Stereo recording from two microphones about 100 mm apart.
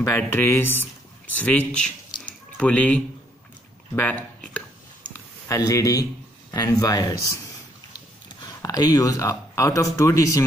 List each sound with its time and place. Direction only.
0.0 s speech: 25° left (ahead or behind)
2.2 s drip: 15° left (ahead or behind)
3.9 s a sound: 20° left (ahead or behind)
5.7 s speech: 35° left (ahead or behind)